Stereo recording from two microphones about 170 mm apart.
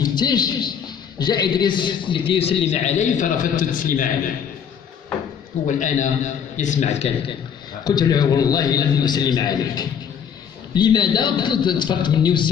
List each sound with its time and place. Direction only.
0.0 s a man's voice: 25° left (ahead or behind); by 4.1 s 50° left (ahead or behind)
5.8 s a man's voice: 45° left (ahead or behind)
7.8 s a man's voice: 25° left (ahead or behind)